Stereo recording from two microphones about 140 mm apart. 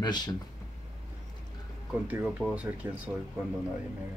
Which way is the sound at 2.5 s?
10° right (ahead or behind).